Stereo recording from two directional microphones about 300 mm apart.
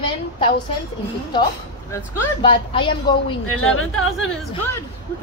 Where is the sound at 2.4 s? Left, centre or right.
Centre.